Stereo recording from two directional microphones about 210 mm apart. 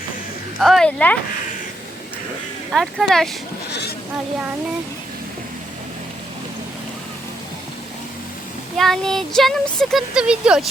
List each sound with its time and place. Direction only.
0.6 s speech: centre (ahead or behind)
2.7 s speech: centre (ahead or behind)
3.7 s speech: 50° left (ahead or behind)
8.8 s speech: centre (ahead or behind)